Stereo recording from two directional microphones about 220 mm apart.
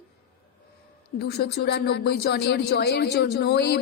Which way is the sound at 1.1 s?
50° left (ahead or behind).